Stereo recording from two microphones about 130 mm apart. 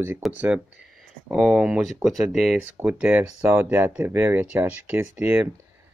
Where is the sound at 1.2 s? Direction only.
5° right (ahead or behind).